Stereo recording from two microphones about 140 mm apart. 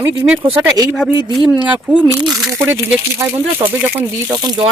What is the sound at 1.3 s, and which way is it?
Speech, 10° right (ahead or behind).